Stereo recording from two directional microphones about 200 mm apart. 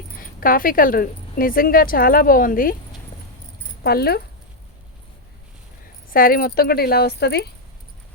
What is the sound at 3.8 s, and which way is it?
Speech, 50° left (ahead or behind).